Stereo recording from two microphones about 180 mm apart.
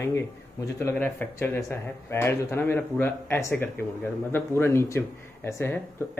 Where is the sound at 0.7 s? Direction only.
15° left (ahead or behind).